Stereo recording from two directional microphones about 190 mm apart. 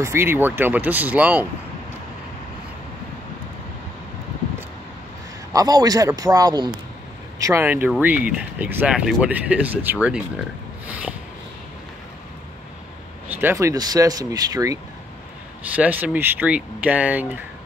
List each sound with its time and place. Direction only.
0.0 s speech: 10° right (ahead or behind)
5.5 s a man's voice: 20° right (ahead or behind)
10.9 s a sound: 10° right (ahead or behind)
13.3 s speech: 10° right (ahead or behind)
15.6 s speech: 5° right (ahead or behind)